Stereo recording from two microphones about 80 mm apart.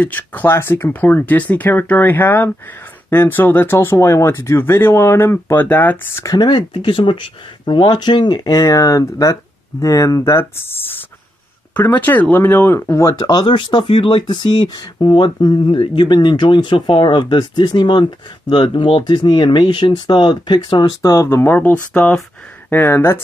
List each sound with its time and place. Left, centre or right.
0.0 s speech: left
6.3 s speech: left
13.2 s speech: left
21.0 s speech: left
21.5 s speech: left